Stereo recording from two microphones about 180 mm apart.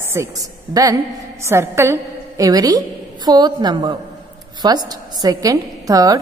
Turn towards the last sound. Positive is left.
turn(degrees=-20)  # may be behind; listen again after turning